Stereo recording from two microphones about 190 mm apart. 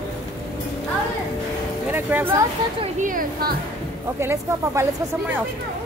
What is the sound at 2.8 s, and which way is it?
Speech, 45° right (ahead or behind).